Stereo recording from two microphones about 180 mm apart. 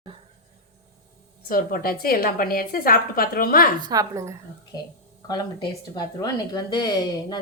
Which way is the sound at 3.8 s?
20° right (ahead or behind).